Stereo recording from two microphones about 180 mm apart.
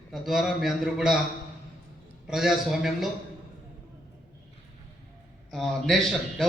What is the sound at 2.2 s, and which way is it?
Speech, centre (ahead or behind).